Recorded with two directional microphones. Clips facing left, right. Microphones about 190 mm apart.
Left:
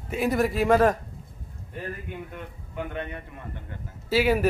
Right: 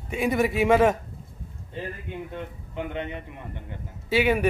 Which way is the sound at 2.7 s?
20° right (ahead or behind).